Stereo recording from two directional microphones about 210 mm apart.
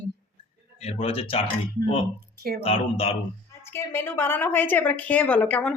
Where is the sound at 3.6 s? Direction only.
10° left (ahead or behind).